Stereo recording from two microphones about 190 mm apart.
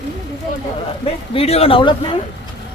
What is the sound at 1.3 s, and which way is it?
Speech, 30° left (ahead or behind).